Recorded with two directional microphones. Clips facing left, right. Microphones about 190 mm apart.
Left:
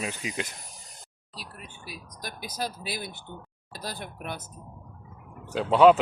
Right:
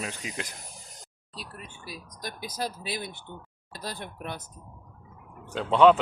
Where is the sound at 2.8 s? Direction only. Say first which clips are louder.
Right 1 dB; 25° right (ahead or behind).